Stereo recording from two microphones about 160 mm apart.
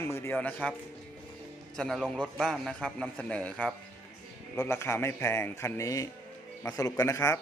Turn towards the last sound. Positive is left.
turn(degrees=20)  # may be behind; listen again after turning